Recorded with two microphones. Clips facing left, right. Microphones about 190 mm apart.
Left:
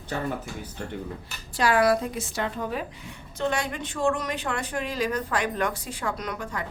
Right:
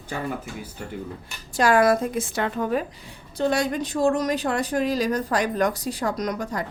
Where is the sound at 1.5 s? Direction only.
45° right (ahead or behind).